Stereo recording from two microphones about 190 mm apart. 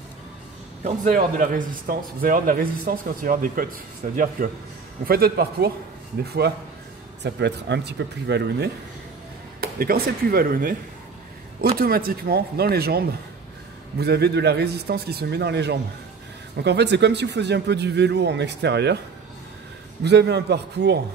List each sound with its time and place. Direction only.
0.8 s a man's voice: 45° right (ahead or behind); by 8.6 s 65° right (ahead or behind)
9.6 s a man's voice: 55° right (ahead or behind)
20.0 s speech: 65° right (ahead or behind)